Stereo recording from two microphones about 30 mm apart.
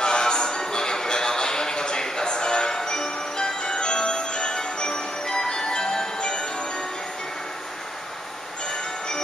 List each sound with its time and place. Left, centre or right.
0.0 s music: left